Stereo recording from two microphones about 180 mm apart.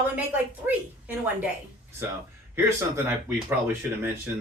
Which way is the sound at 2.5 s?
10° right (ahead or behind).